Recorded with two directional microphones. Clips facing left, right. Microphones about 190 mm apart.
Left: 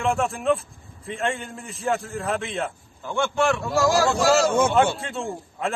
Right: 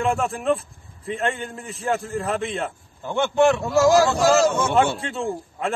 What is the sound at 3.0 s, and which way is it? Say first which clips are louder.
Speech: right 4 dB; 20° right (ahead or behind).